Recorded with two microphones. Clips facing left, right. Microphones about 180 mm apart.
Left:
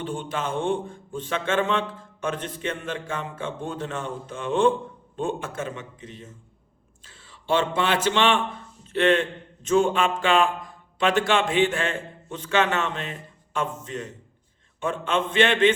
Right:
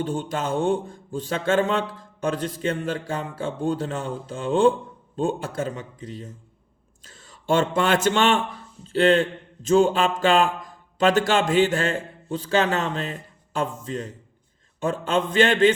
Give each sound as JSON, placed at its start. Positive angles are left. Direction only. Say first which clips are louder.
{"t": 0.0, "sound": "a man's voice", "louder": "right 3 dB", "side_deg": -40}